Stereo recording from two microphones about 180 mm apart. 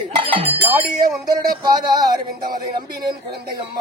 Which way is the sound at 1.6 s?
20° right (ahead or behind).